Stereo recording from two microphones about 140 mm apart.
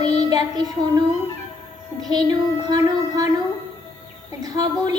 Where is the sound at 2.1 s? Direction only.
30° right (ahead or behind).